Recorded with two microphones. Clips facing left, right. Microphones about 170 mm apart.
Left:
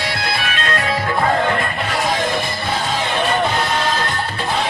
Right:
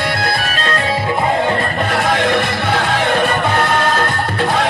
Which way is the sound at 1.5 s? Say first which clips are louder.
Right 4 dB; 40° right (ahead or behind).